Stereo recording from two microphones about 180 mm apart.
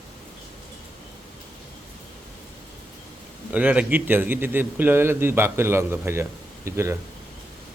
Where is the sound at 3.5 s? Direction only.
10° right (ahead or behind).